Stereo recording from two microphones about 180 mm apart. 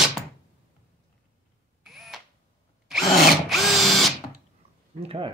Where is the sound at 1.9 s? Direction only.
Centre (ahead or behind).